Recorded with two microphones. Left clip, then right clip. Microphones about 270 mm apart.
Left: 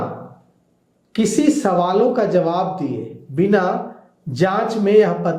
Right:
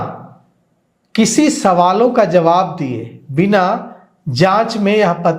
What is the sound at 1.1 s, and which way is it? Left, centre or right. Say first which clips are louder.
A man's voice: right 4 dB; right.